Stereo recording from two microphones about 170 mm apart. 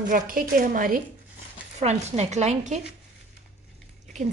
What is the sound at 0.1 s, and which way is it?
Speech, 55° right (ahead or behind).